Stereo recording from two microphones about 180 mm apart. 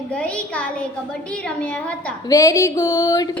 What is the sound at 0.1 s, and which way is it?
A woman's voice, 5° left (ahead or behind).